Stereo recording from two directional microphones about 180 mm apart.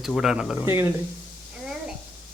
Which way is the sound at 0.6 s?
15° right (ahead or behind).